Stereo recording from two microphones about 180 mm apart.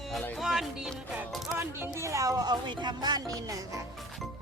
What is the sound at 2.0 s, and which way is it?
Speech, 15° right (ahead or behind).